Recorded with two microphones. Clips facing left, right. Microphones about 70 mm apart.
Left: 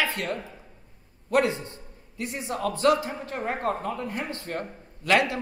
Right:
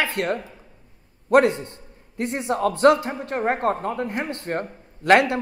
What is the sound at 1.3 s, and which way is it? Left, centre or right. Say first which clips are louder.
A man's voice: right 7 dB; right.